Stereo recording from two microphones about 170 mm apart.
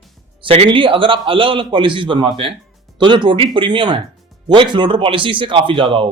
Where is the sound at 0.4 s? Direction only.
35° right (ahead or behind).